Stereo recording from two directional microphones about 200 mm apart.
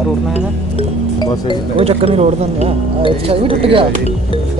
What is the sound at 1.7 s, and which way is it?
Speech, 30° right (ahead or behind).